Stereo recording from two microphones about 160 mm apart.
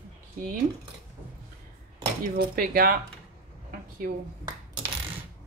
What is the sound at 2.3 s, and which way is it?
Speech, 65° right (ahead or behind).